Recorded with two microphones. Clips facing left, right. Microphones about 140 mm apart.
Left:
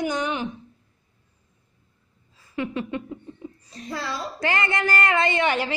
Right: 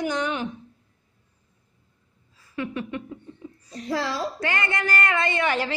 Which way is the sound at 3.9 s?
90° right.